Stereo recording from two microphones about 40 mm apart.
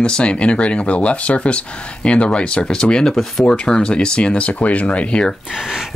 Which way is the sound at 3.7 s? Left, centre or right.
Left.